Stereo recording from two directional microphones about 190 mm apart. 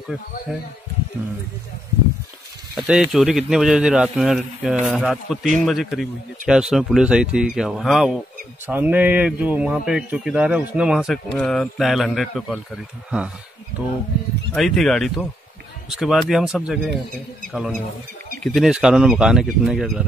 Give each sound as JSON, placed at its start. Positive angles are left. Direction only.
{"t": 2.7, "sound": "a man's voice", "side_deg": 0}
{"t": 14.5, "sound": "a man's voice", "side_deg": 0}